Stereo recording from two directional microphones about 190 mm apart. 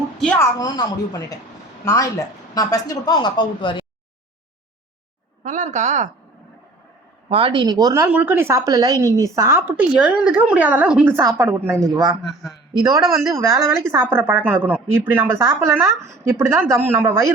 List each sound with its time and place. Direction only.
0.3 s speech: 15° left (ahead or behind)
5.4 s speech: 40° right (ahead or behind)
7.3 s speech: 30° right (ahead or behind); by 11.8 s 10° right (ahead or behind)
12.0 s a man's voice: centre (ahead or behind)
12.8 s speech: 15° right (ahead or behind)